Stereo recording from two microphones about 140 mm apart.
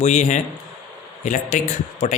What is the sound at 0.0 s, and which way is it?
Speech, 55° left (ahead or behind).